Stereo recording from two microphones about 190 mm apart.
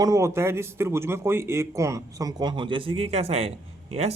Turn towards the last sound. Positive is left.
turn(degrees=-30)  # may be behind; listen again after turning